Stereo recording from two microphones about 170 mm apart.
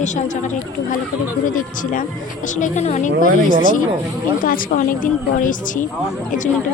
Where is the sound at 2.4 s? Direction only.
50° left (ahead or behind).